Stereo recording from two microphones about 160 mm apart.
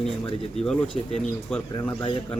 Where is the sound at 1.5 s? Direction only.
Centre (ahead or behind).